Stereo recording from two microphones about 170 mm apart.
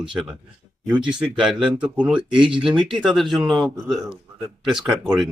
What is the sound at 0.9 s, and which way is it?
Speech, 30° right (ahead or behind).